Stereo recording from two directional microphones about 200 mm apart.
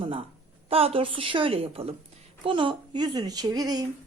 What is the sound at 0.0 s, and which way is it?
A woman's voice, 30° right (ahead or behind).